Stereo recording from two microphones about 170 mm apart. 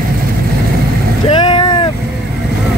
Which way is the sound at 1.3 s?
30° left (ahead or behind).